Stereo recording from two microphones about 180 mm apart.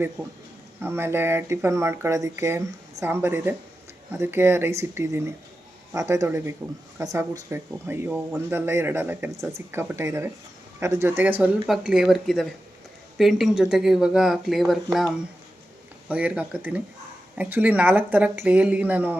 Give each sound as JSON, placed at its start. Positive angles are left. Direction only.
{"t": 0.2, "sound": "speech", "side_deg": -10}